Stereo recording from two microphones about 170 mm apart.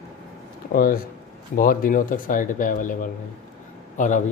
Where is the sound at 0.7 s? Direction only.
60° left (ahead or behind).